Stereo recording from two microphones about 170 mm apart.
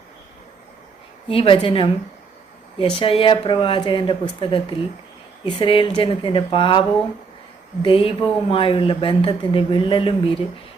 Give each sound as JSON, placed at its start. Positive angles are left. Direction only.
{"t": 1.3, "sound": "speech", "side_deg": 30}